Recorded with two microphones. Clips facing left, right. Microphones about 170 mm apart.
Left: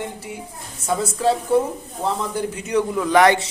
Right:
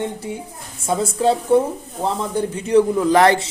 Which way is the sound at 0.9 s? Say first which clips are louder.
Right 2 dB; 25° right (ahead or behind).